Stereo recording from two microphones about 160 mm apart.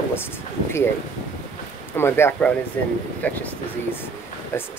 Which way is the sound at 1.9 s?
15° left (ahead or behind).